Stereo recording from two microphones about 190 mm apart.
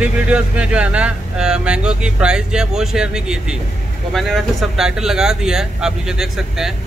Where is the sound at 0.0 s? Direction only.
5° right (ahead or behind).